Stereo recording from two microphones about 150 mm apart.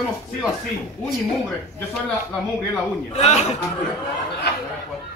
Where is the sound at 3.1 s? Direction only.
45° left (ahead or behind).